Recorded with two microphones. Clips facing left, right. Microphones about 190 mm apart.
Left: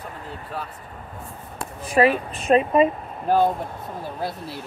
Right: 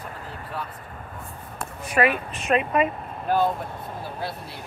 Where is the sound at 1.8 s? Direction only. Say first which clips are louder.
Left 4 dB; 35° left (ahead or behind).